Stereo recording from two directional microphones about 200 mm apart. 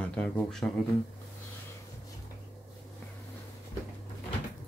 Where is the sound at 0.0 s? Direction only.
5° left (ahead or behind).